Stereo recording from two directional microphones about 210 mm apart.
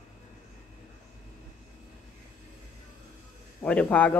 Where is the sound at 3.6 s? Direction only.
5° left (ahead or behind).